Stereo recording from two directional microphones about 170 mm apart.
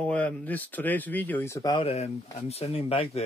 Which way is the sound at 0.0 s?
10° left (ahead or behind).